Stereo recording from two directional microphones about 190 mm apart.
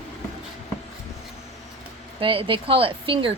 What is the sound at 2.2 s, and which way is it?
Speech, 25° right (ahead or behind).